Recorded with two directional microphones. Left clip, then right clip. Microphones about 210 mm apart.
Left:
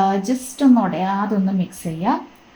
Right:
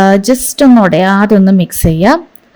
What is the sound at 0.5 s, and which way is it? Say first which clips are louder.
Speech: right 9 dB; 50° right (ahead or behind).